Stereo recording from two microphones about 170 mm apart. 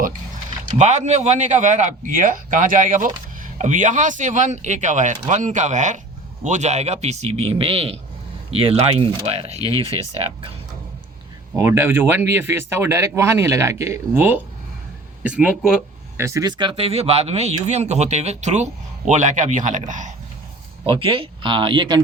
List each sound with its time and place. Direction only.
0.6 s a man's voice: 45° right (ahead or behind)
11.5 s speech: 15° right (ahead or behind)
16.1 s a man's voice: 15° right (ahead or behind); by 20.1 s 45° right (ahead or behind)
20.8 s speech: 30° right (ahead or behind)